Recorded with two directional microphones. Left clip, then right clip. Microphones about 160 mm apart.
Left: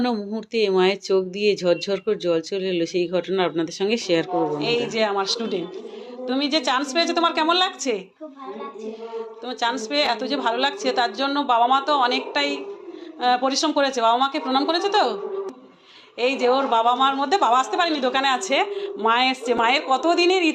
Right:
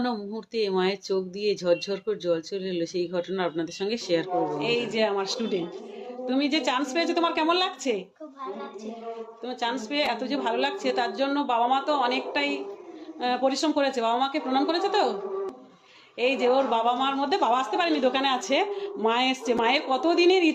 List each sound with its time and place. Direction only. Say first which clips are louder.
0.0 s speech: left 5 dB; 15° left (ahead or behind)
4.6 s a woman's voice: left 3 dB; 5° right (ahead or behind)
9.5 s a woman's voice: left 5 dB; centre (ahead or behind)
16.1 s a woman's voice: left 3 dB; 5° right (ahead or behind)